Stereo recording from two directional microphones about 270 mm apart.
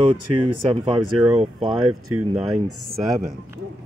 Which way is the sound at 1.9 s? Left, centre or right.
Right.